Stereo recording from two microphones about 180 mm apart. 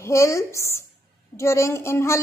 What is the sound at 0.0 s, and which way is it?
Speech, 15° left (ahead or behind).